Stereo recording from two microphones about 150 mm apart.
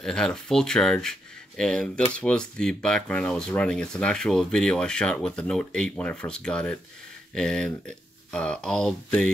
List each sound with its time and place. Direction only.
0.0 s speech: 5° left (ahead or behind)